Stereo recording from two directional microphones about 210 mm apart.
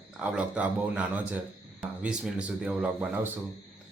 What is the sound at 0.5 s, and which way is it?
A man's voice, 5° right (ahead or behind).